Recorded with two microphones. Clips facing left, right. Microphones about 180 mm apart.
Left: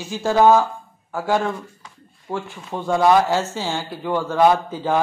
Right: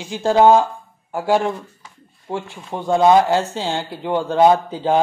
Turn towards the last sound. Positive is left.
turn(degrees=-20)  # may be behind; listen again after turning